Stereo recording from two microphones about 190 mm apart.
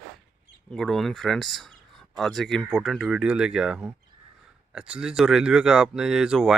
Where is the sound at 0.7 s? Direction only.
Centre (ahead or behind).